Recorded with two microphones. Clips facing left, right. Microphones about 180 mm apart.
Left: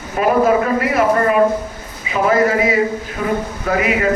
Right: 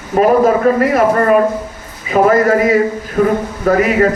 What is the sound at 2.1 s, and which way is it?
Speech, 45° right (ahead or behind).